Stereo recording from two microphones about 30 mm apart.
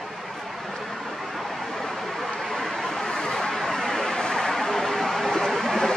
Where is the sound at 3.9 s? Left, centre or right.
Centre.